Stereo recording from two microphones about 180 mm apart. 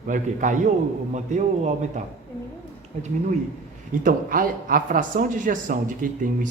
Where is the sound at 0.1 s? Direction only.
45° right (ahead or behind).